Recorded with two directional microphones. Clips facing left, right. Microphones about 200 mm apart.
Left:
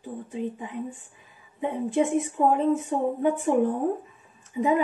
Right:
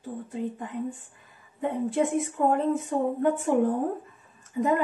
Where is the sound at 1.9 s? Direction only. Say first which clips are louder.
Left 4 dB; centre (ahead or behind).